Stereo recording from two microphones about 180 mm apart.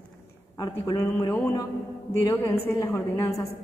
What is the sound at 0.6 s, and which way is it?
A woman's voice, 20° left (ahead or behind).